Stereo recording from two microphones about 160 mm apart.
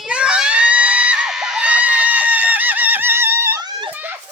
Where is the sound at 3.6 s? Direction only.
25° right (ahead or behind).